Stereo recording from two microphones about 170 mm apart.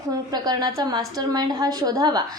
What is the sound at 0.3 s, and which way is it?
A woman's voice, 25° right (ahead or behind).